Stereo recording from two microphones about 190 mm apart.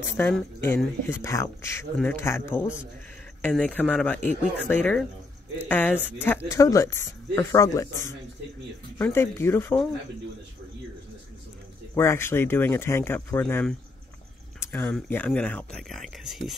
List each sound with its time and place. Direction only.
0.2 s speech: 10° left (ahead or behind)
3.4 s speech: 5° left (ahead or behind)
11.9 s speech: 15° left (ahead or behind)